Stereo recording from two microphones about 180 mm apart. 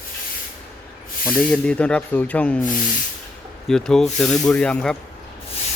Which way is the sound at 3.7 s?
5° left (ahead or behind).